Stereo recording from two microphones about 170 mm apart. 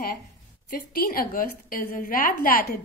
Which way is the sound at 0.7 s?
60° left (ahead or behind).